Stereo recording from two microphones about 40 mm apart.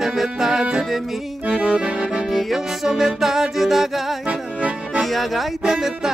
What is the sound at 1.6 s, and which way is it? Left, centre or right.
Accordion, right.